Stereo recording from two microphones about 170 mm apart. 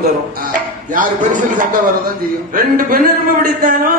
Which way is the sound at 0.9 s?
50° right (ahead or behind).